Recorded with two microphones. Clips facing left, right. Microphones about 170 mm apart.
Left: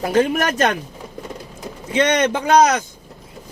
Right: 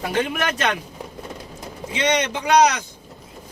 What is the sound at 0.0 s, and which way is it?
Speech, 40° left (ahead or behind).